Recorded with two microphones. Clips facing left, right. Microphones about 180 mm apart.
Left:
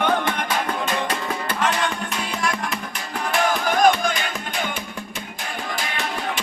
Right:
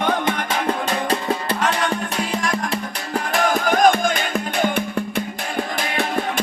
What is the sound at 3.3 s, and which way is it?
Music, 45° right (ahead or behind).